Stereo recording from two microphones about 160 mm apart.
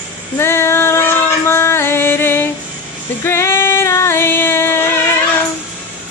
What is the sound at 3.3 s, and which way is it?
Female singing, 15° left (ahead or behind).